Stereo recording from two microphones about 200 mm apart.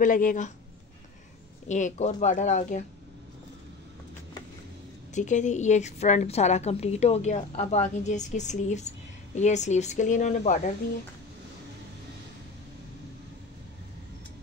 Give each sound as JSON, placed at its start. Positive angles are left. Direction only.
{"t": 0.0, "sound": "a woman's voice", "side_deg": 40}
{"t": 1.7, "sound": "a woman's voice", "side_deg": 35}
{"t": 5.1, "sound": "a woman's voice", "side_deg": 40}